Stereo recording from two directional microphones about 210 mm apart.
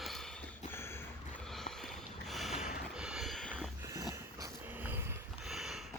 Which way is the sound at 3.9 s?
15° right (ahead or behind).